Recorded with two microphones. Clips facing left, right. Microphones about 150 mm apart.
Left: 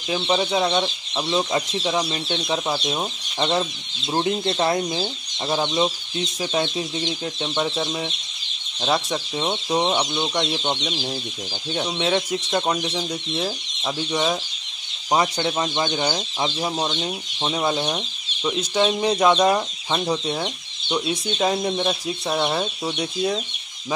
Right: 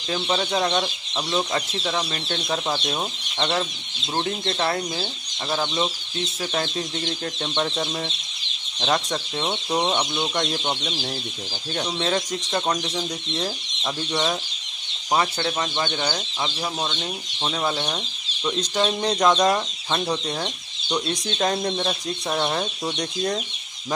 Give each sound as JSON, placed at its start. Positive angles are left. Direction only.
{"t": 0.1, "sound": "speech", "side_deg": 10}
{"t": 7.1, "sound": "speech", "side_deg": 10}
{"t": 10.6, "sound": "speech", "side_deg": -5}
{"t": 11.7, "sound": "speech", "side_deg": 10}
{"t": 15.1, "sound": "speech", "side_deg": 15}